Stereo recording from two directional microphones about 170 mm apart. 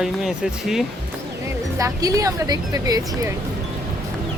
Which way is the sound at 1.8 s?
20° right (ahead or behind).